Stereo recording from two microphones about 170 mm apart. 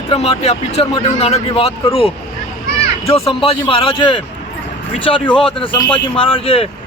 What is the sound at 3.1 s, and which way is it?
Speech, 35° left (ahead or behind).